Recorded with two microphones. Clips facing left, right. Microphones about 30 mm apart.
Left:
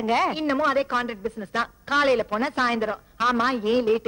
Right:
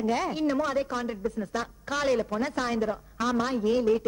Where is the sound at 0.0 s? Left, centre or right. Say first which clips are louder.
Left 4 dB; left.